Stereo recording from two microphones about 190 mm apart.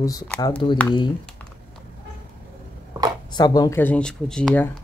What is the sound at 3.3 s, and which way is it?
Speech, 20° left (ahead or behind).